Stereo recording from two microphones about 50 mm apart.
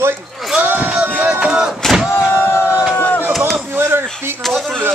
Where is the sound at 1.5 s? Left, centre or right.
Centre.